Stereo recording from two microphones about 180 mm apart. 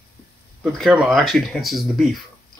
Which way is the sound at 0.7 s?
5° right (ahead or behind).